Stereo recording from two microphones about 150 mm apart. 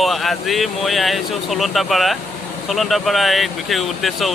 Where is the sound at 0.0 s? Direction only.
Centre (ahead or behind).